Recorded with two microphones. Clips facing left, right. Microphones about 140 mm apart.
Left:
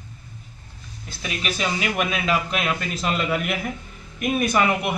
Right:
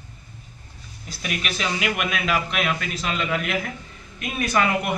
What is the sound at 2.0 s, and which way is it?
Speech, 35° left (ahead or behind).